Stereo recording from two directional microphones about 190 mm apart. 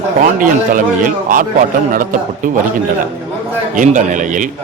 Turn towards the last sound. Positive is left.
turn(degrees=-40)  # may be behind; listen again after turning